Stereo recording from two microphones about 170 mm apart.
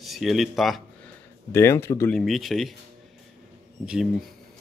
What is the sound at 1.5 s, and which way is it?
Speech, 15° left (ahead or behind).